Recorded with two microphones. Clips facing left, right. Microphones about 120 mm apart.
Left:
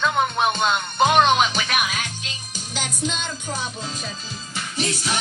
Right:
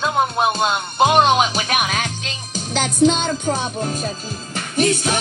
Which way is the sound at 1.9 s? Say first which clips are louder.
Right 6 dB; 85° right.